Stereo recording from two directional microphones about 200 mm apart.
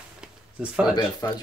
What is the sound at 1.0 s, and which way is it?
Speech, 20° left (ahead or behind).